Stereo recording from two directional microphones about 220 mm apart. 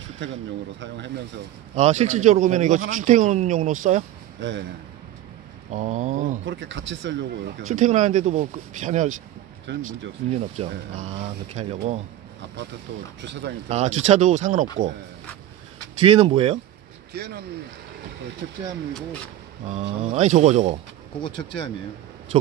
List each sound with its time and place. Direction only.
0.7 s speech: 55° right (ahead or behind)
1.8 s speech: 30° right (ahead or behind)
4.4 s speech: 55° right (ahead or behind)
5.7 s speech: 35° right (ahead or behind)
6.4 s speech: 55° right (ahead or behind)
7.6 s speech: 35° right (ahead or behind)
13.2 s speech: 50° right (ahead or behind)
13.7 s speech: 30° right (ahead or behind)
16.0 s speech: 25° right (ahead or behind)
17.1 s speech: 50° right (ahead or behind)
19.6 s speech: 30° right (ahead or behind)
21.2 s speech: 25° left (ahead or behind)